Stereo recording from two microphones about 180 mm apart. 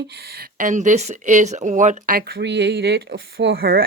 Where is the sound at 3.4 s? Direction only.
55° right (ahead or behind).